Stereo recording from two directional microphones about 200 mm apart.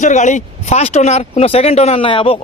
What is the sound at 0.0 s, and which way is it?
Speech, 35° left (ahead or behind).